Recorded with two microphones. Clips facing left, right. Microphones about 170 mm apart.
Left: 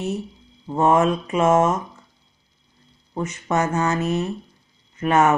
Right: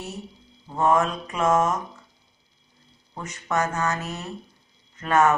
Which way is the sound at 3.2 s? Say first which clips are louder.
Left 4 dB; 25° left (ahead or behind).